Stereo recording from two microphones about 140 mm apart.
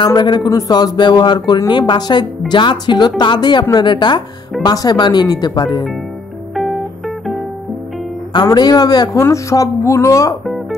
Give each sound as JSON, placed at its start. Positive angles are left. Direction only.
{"t": 0.0, "sound": "speech", "side_deg": 35}
{"t": 6.5, "sound": "music", "side_deg": 0}
{"t": 8.5, "sound": "speech", "side_deg": 30}